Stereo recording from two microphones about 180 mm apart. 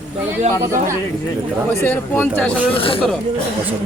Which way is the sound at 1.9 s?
10° left (ahead or behind).